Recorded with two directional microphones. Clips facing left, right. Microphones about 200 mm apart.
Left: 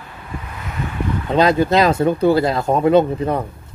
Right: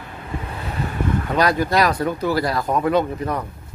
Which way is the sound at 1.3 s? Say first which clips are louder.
Left 5 dB; 25° left (ahead or behind).